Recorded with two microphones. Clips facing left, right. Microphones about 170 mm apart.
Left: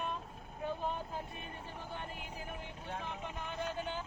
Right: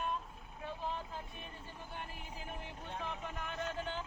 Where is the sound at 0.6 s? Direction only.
50° left (ahead or behind).